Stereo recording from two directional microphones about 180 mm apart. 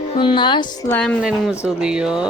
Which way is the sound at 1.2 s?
5° right (ahead or behind).